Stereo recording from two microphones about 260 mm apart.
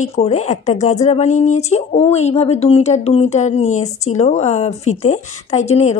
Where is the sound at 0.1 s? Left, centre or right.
Left.